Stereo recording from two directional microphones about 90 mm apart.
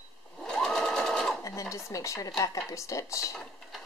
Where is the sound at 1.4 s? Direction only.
35° left (ahead or behind).